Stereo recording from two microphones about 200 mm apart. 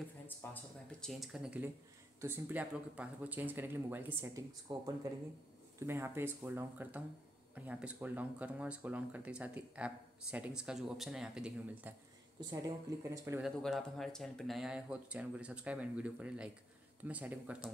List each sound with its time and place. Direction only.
0.4 s speech: 10° left (ahead or behind)
1.0 s speech: centre (ahead or behind)
12.4 s speech: 20° right (ahead or behind)
13.4 s speech: centre (ahead or behind)